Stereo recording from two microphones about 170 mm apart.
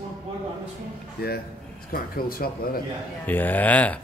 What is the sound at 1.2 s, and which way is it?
A man's voice, 65° left (ahead or behind).